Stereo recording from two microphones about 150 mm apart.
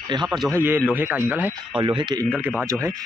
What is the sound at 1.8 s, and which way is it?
Speech, 30° right (ahead or behind).